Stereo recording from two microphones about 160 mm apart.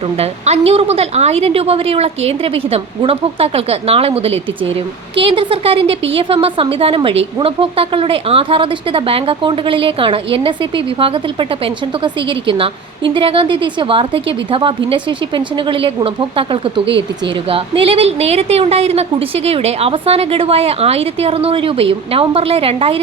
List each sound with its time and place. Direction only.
0.2 s a woman's voice: 40° right (ahead or behind)
12.0 s a woman's voice: 30° right (ahead or behind)
15.7 s a woman's voice: 35° right (ahead or behind)